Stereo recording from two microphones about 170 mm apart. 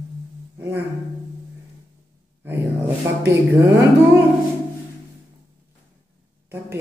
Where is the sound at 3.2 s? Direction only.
15° right (ahead or behind).